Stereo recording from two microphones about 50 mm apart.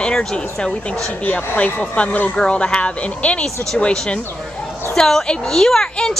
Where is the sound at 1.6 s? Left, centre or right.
Left.